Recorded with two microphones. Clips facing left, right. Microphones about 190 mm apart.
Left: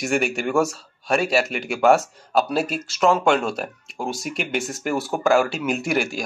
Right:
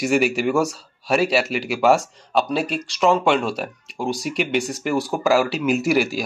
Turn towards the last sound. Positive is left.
turn(degrees=0)  # may be behind; listen again after turning